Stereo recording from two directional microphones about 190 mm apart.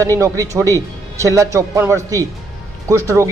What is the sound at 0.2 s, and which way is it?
Speech, 15° right (ahead or behind).